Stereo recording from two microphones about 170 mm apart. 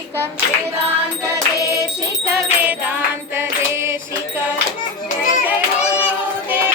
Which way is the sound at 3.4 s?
15° right (ahead or behind).